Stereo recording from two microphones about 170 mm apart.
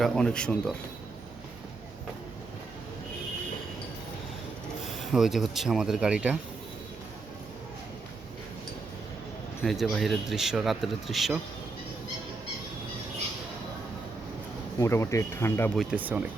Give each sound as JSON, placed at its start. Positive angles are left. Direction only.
{"t": 0.0, "sound": "speech", "side_deg": 5}
{"t": 4.9, "sound": "speech", "side_deg": 0}
{"t": 9.6, "sound": "speech", "side_deg": 0}
{"t": 14.8, "sound": "speech", "side_deg": 15}
{"t": 15.7, "sound": "speech", "side_deg": -5}